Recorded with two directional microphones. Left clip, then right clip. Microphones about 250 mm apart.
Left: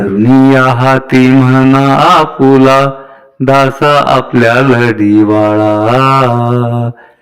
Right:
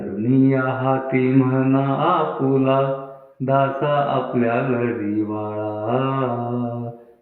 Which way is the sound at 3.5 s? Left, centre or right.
Left.